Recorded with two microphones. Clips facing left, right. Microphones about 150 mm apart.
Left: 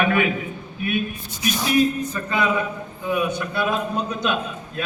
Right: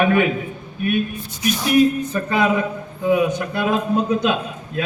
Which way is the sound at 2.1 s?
70° right (ahead or behind).